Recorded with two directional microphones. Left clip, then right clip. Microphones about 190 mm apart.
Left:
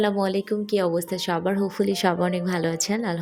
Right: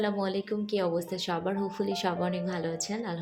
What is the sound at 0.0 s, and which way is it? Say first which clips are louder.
Speech: left 7 dB; 35° left (ahead or behind).